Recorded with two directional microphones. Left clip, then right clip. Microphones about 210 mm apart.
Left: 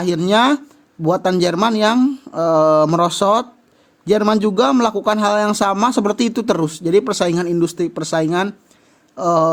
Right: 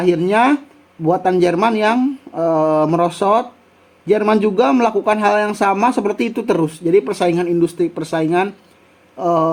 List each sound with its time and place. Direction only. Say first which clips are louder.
0.0 s speech: right 1 dB; 85° left